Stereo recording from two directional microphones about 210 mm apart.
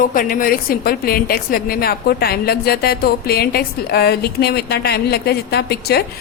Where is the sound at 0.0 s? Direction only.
40° left (ahead or behind).